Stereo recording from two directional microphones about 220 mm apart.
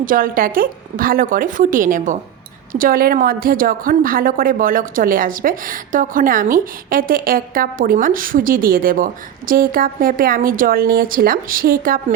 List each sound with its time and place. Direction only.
0.0 s a woman's voice: 40° right (ahead or behind)